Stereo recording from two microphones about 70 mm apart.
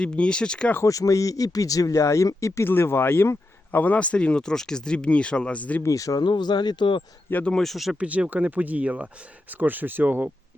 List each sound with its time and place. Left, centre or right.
0.0 s speech: centre
0.9 s speech: left
2.6 s speech: left
5.8 s speech: left
6.2 s speech: left
7.6 s speech: centre
7.9 s speech: centre